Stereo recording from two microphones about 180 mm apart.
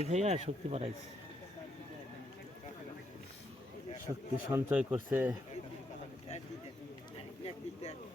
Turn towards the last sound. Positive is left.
turn(degrees=35)  # may be behind; listen again after turning